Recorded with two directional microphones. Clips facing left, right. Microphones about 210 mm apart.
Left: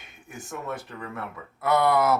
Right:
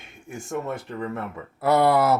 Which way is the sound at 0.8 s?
25° right (ahead or behind).